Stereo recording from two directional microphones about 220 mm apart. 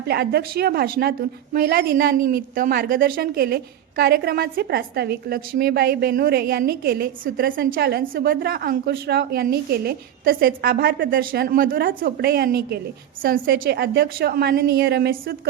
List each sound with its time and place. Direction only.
0.1 s a woman's voice: 45° right (ahead or behind)